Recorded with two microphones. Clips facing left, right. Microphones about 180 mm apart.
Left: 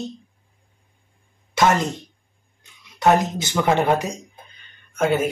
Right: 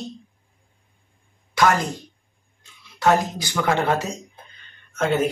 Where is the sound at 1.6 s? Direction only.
20° left (ahead or behind).